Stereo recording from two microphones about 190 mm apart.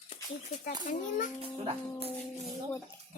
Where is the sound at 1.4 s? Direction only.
30° right (ahead or behind).